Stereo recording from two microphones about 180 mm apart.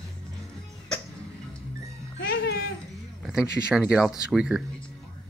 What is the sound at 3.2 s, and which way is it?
Speech, 5° right (ahead or behind).